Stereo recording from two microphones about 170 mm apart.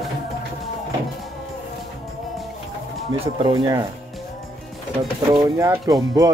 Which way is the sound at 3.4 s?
25° right (ahead or behind).